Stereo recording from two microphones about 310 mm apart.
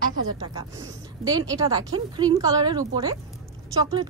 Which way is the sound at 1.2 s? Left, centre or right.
Centre.